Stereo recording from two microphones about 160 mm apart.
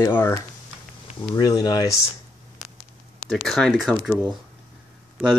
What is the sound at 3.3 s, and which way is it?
Speech, 5° left (ahead or behind).